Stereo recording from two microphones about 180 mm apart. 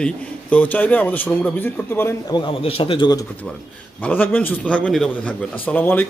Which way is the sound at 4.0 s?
10° left (ahead or behind).